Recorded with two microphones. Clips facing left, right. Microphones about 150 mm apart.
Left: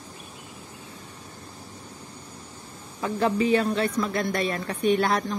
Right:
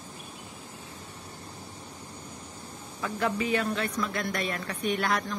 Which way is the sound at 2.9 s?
30° left (ahead or behind).